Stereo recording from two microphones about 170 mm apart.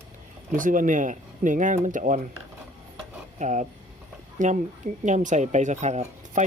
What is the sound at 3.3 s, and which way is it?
A man's voice, 45° right (ahead or behind).